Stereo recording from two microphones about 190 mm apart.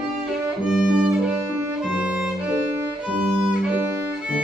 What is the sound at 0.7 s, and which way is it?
Violin, 5° right (ahead or behind).